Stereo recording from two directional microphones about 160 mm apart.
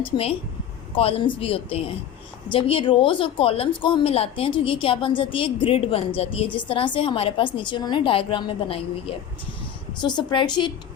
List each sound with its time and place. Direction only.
0.0 s a woman's voice: 35° left (ahead or behind)